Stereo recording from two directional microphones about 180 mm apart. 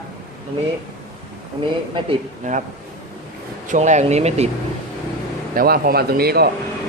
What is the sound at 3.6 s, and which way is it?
Speech, 40° right (ahead or behind).